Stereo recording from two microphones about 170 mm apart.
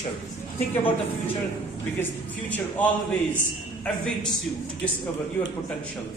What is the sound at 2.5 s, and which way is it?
Speech, 10° left (ahead or behind).